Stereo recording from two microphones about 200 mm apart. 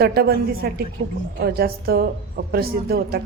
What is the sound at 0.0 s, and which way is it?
Speech, 50° right (ahead or behind).